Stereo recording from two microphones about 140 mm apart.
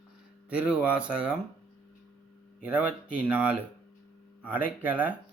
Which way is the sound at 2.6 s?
10° right (ahead or behind).